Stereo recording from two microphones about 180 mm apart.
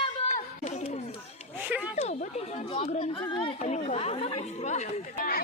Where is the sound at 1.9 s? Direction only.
35° left (ahead or behind).